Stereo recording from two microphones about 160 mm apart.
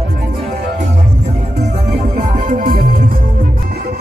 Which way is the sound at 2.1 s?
55° right (ahead or behind).